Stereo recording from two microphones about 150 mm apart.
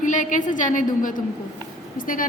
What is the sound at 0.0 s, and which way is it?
A woman's voice, 60° left (ahead or behind).